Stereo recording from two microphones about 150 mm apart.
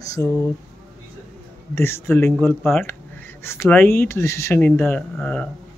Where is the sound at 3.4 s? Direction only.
15° left (ahead or behind).